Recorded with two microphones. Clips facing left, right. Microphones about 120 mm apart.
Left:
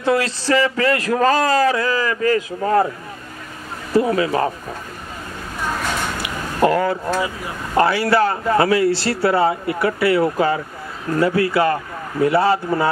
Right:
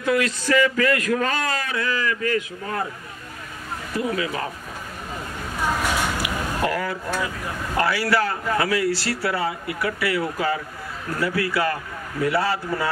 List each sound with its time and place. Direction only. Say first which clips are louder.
0.0 s speech: left 3 dB; 30° left (ahead or behind)
3.9 s speech: left 9 dB; 35° left (ahead or behind)
6.2 s a sound: left 6 dB; 30° left (ahead or behind)
7.7 s a man's voice: left 6 dB; 25° left (ahead or behind)